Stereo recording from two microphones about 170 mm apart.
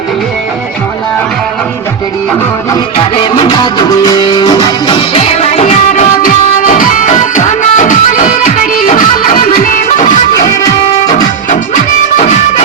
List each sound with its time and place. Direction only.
3.3 s music: 25° left (ahead or behind); by 10.1 s 50° left (ahead or behind)
12.1 s music: 40° left (ahead or behind)